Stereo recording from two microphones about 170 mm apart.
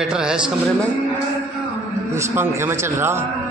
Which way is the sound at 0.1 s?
5° right (ahead or behind).